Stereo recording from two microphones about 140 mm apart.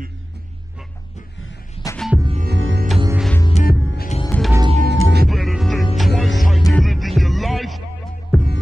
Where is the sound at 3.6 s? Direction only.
85° left.